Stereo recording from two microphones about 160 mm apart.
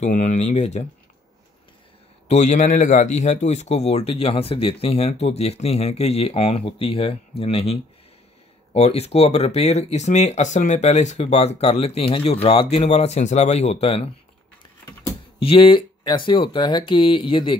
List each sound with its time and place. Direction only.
0.0 s speech: 50° left (ahead or behind)
2.2 s a man's voice: 45° left (ahead or behind)
8.7 s a man's voice: 40° left (ahead or behind)
15.3 s a man's voice: 35° left (ahead or behind)